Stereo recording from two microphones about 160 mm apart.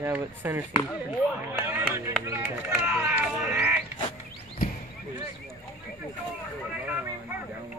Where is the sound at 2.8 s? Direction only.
10° right (ahead or behind).